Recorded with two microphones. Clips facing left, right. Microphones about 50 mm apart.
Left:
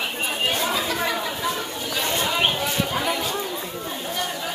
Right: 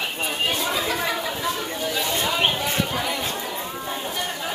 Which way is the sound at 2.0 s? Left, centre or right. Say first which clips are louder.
Left 2 dB; left.